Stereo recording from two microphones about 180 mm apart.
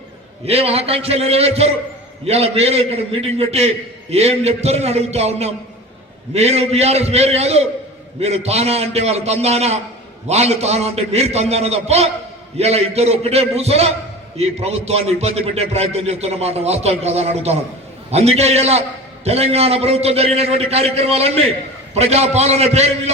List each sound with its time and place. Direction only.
0.4 s a man's voice: 35° right (ahead or behind)